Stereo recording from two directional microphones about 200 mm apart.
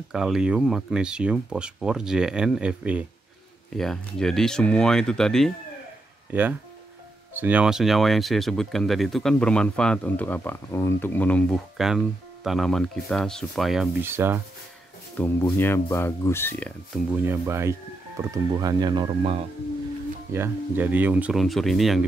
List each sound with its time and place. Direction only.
0.1 s speech: 5° right (ahead or behind)
7.3 s speech: 10° right (ahead or behind)
14.0 s speech: 10° right (ahead or behind)
15.1 s speech: 10° left (ahead or behind)
17.1 s speech: 10° right (ahead or behind)
20.3 s speech: 10° right (ahead or behind)